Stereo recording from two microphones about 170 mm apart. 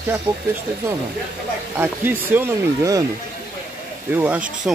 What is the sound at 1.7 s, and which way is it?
Speech, 10° right (ahead or behind).